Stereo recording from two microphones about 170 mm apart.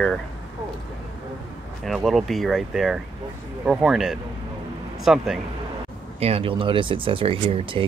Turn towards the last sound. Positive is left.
turn(degrees=-30)  # may be behind; listen again after turning